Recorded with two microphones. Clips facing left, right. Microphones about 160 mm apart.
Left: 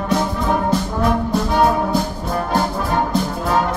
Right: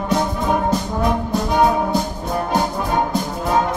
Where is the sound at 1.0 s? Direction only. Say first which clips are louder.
Left 1 dB; 20° right (ahead or behind).